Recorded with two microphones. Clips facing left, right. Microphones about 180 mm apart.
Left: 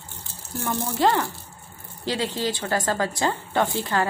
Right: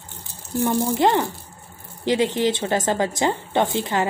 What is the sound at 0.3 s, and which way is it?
Speech, 15° right (ahead or behind).